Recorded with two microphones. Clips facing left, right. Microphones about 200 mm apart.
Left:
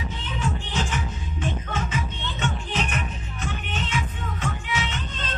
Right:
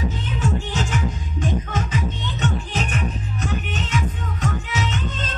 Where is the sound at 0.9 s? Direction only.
40° right (ahead or behind).